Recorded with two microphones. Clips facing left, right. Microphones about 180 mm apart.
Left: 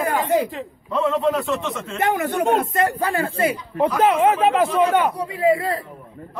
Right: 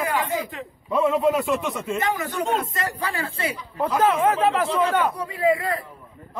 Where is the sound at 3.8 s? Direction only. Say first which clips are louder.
Left 3 dB; 20° left (ahead or behind).